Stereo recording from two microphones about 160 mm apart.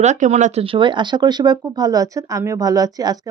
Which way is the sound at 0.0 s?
45° right (ahead or behind).